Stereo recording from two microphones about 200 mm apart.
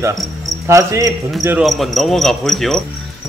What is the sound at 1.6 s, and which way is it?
Speech, centre (ahead or behind).